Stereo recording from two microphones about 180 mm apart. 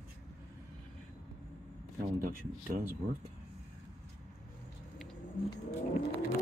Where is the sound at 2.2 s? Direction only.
50° right (ahead or behind).